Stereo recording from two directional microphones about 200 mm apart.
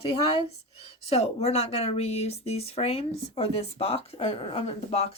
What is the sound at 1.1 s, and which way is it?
A woman's voice, 30° left (ahead or behind).